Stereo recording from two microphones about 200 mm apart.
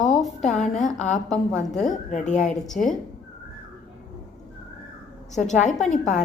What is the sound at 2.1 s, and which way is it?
Speech, 35° left (ahead or behind).